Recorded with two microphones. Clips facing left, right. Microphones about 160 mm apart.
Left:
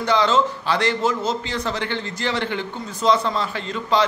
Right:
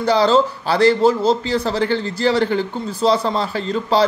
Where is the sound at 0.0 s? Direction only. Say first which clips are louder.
Right 4 dB; 35° right (ahead or behind).